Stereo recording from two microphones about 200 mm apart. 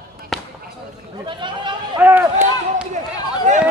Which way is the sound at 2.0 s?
10° right (ahead or behind).